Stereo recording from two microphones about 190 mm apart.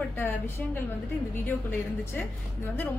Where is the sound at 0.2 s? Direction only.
10° left (ahead or behind).